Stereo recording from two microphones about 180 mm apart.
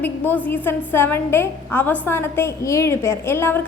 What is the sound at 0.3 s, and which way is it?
A woman's voice, 10° left (ahead or behind).